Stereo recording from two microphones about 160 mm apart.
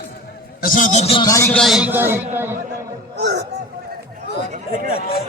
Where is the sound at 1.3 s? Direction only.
20° left (ahead or behind).